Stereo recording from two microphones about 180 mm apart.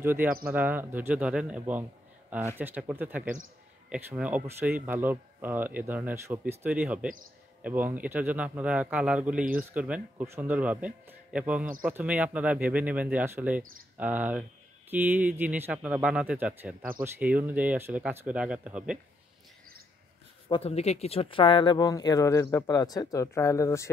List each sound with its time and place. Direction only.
0.0 s speech: 10° right (ahead or behind)
20.4 s speech: 30° left (ahead or behind)